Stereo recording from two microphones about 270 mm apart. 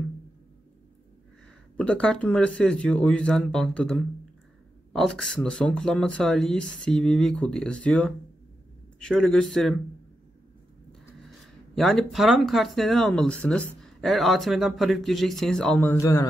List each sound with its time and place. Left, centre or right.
1.8 s speech: centre
10.9 s speech: centre